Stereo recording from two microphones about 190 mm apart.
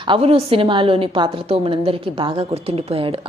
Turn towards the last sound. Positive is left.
turn(degrees=-30)  # may be behind; listen again after turning